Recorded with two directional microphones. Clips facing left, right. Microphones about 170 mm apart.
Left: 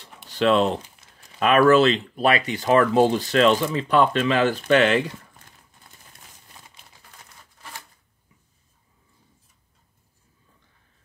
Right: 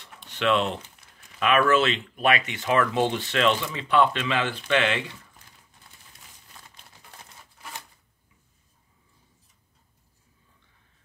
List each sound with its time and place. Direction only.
0.3 s speech: 35° left (ahead or behind)